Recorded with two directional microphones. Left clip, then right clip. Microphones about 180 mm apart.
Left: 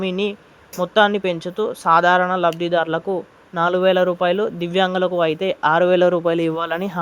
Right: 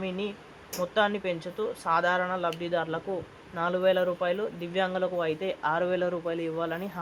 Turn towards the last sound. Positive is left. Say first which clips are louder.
# left 10 dB
turn(degrees=55)  # may be behind; listen again after turning